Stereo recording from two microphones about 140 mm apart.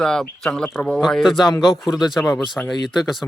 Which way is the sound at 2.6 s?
10° left (ahead or behind).